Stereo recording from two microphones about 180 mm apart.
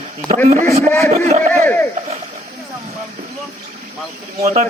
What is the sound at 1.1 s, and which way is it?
Speech, 40° right (ahead or behind).